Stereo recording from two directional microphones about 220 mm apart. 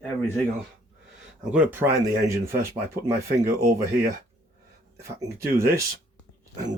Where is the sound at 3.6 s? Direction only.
45° right (ahead or behind).